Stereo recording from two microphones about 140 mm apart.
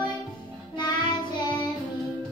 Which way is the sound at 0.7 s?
30° left (ahead or behind).